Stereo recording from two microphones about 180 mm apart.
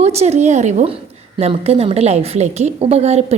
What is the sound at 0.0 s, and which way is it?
A woman's voice, 35° right (ahead or behind).